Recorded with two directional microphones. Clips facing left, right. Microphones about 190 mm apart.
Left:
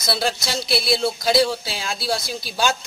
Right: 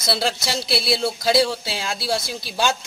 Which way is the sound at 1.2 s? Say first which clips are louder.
Right 1 dB; centre (ahead or behind).